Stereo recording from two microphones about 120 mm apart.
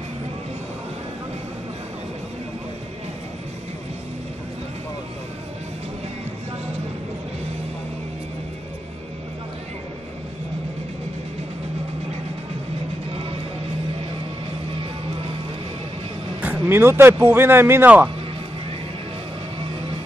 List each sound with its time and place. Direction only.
16.3 s speech: 15° right (ahead or behind)